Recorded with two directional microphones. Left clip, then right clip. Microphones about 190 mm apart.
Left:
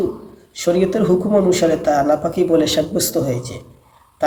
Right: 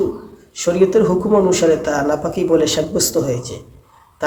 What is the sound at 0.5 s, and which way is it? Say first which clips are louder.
A man's voice: right 3 dB; 5° right (ahead or behind).